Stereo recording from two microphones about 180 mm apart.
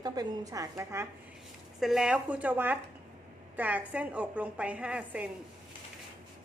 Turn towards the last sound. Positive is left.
turn(degrees=-5)  # may be behind; listen again after turning